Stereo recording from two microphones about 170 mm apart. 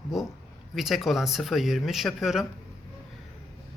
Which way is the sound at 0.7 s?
Centre (ahead or behind).